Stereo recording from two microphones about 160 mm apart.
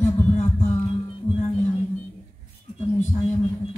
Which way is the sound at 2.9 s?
10° left (ahead or behind).